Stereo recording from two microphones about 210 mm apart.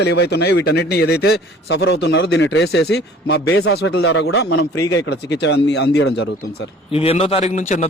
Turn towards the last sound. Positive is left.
turn(degrees=35)  # may be behind; listen again after turning